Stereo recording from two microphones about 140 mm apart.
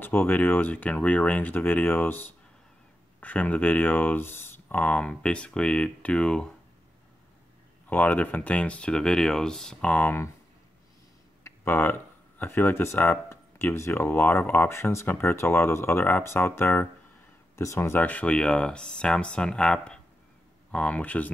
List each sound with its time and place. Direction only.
0.0 s speech: 15° left (ahead or behind)
7.9 s speech: 10° left (ahead or behind)
11.4 s speech: 15° left (ahead or behind)